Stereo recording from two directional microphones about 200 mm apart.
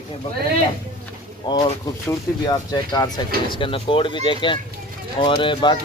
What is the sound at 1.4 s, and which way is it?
Speech, 20° left (ahead or behind).